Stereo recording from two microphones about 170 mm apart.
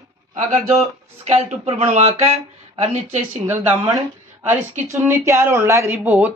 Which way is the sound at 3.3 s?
10° right (ahead or behind).